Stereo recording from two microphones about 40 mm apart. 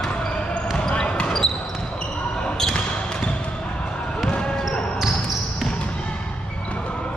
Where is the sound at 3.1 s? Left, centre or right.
Left.